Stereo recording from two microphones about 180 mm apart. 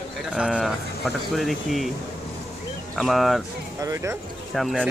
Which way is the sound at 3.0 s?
Centre (ahead or behind).